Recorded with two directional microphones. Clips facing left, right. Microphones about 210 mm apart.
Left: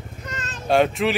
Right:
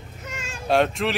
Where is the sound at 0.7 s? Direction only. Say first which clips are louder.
Left 2 dB; centre (ahead or behind).